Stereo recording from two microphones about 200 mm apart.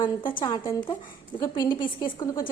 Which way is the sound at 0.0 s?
25° left (ahead or behind).